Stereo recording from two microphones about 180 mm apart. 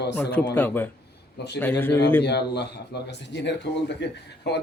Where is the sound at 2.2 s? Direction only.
65° left (ahead or behind).